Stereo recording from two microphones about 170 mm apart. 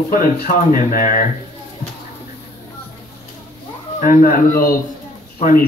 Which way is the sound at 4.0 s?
55° left (ahead or behind).